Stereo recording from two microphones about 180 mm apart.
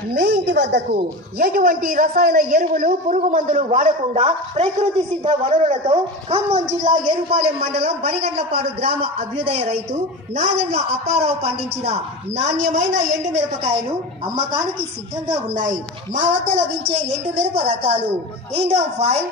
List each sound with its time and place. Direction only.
0.1 s speech: 65° right (ahead or behind)
1.4 s a woman's voice: 50° right (ahead or behind)
15.5 s a woman's voice: 45° right (ahead or behind)
17.1 s a man's voice: 35° right (ahead or behind)